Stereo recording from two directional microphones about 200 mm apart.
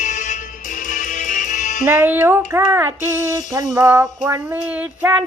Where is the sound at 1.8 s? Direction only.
10° right (ahead or behind).